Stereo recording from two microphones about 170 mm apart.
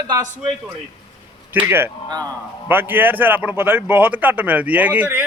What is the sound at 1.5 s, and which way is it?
A man's voice, 10° right (ahead or behind).